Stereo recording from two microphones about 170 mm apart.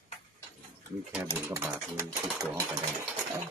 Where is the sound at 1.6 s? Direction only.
15° right (ahead or behind).